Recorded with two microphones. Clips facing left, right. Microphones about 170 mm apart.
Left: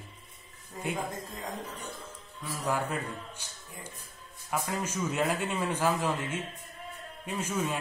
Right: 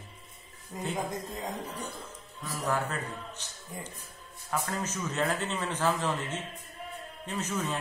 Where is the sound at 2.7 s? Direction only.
10° left (ahead or behind).